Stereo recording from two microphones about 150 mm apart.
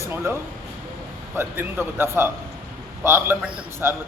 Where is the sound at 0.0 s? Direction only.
15° right (ahead or behind).